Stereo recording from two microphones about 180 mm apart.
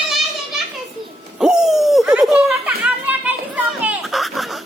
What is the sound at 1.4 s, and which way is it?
Laughter, 5° right (ahead or behind).